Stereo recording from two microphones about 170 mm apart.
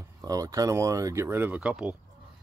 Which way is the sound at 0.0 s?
20° right (ahead or behind).